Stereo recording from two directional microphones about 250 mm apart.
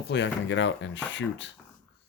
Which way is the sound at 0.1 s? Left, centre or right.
Left.